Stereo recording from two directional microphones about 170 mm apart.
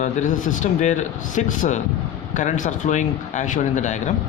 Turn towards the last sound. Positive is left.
turn(degrees=45)  # may be behind; listen again after turning